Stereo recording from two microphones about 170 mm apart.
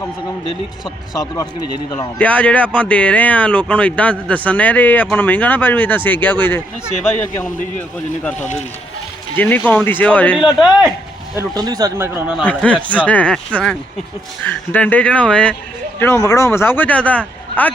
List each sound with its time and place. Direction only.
1.1 s speech: 20° left (ahead or behind)
2.1 s speech: 10° left (ahead or behind)
7.8 s speech: 5° left (ahead or behind)
11.3 s speech: 25° right (ahead or behind)
12.5 s speech: 10° left (ahead or behind)